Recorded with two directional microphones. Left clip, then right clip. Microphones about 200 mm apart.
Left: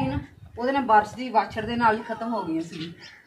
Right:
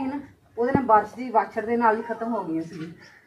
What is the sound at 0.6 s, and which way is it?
Speech, 15° left (ahead or behind).